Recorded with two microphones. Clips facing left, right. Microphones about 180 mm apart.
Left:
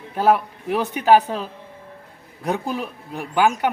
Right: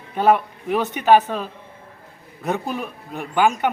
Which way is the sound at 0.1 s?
5° left (ahead or behind).